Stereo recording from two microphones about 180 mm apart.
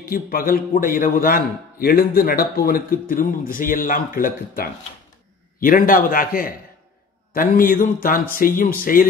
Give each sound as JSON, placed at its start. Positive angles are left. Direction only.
{"t": 0.0, "sound": "a man's voice", "side_deg": 55}